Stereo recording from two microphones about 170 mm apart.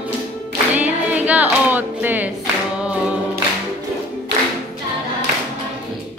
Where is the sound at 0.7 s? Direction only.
10° right (ahead or behind).